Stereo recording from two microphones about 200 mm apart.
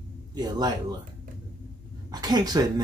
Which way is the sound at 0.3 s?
20° right (ahead or behind).